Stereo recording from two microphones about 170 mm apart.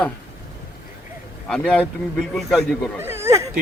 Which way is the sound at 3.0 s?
15° right (ahead or behind).